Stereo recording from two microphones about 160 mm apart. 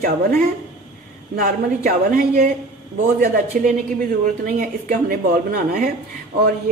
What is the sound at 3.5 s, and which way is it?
Speech, 55° right (ahead or behind).